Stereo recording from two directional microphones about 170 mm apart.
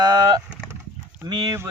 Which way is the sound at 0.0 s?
25° right (ahead or behind).